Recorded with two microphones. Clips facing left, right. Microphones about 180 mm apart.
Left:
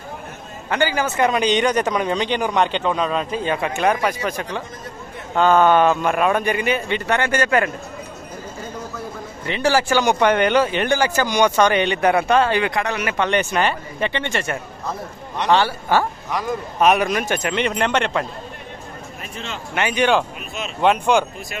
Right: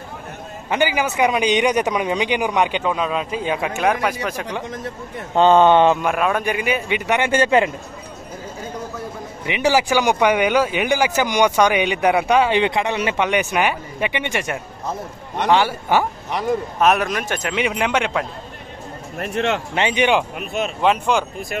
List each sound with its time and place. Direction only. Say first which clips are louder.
0.7 s a man's voice: right 1 dB; 15° right (ahead or behind)
5.3 s speech: right 2 dB; 25° right (ahead or behind)
6.0 s a man's voice: left 1 dB; centre (ahead or behind); by 7.7 s 25° right (ahead or behind)
9.5 s a man's voice: right 1 dB; 15° right (ahead or behind)
16.8 s speech: left 2 dB; centre (ahead or behind)
19.1 s speech: right 13 dB; 65° right (ahead or behind)
19.7 s speech: left 3 dB; 25° right (ahead or behind)
20.3 s speech: right 7 dB; 55° right (ahead or behind)
20.8 s speech: left 2 dB; centre (ahead or behind)